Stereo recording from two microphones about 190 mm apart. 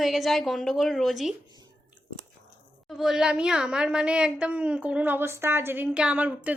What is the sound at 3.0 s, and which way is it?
A woman's voice, centre (ahead or behind).